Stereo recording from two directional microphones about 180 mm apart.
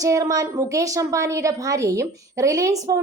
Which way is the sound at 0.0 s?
20° right (ahead or behind).